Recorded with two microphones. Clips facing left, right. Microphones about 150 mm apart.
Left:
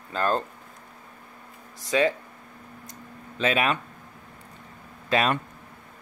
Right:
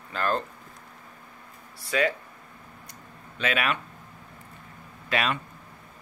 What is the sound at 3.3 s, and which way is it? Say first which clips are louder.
Speech: left 3 dB; 30° left (ahead or behind).